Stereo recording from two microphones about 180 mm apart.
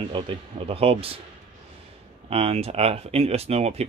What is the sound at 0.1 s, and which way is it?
Speech, 30° right (ahead or behind).